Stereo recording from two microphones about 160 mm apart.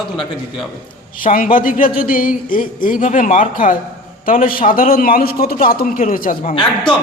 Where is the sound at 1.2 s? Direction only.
60° left (ahead or behind).